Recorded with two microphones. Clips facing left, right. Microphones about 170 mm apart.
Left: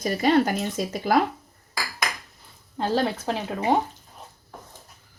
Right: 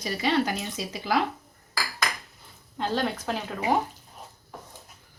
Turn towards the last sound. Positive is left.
turn(degrees=30)  # may be behind; listen again after turning